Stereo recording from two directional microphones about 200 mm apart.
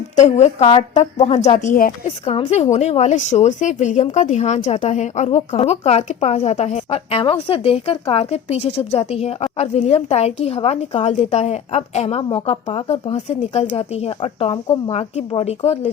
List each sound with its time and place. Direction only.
0.2 s speech: 35° left (ahead or behind)
2.0 s speech: 30° left (ahead or behind)